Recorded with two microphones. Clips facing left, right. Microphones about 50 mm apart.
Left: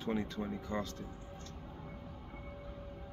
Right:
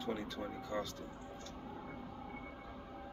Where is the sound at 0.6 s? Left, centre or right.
Left.